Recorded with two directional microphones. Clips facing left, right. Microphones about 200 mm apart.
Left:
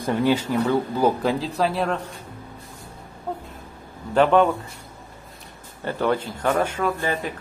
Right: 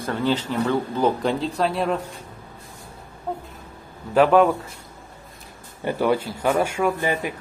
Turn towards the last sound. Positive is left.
turn(degrees=-15)  # may be behind; listen again after turning